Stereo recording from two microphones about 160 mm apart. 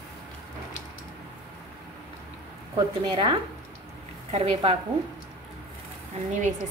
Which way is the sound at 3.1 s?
30° right (ahead or behind).